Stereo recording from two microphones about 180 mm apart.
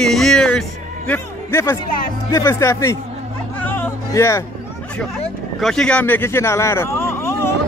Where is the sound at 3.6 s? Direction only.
10° left (ahead or behind).